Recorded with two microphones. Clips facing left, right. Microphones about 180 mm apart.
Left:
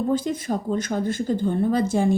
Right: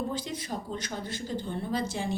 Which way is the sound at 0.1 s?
50° left (ahead or behind).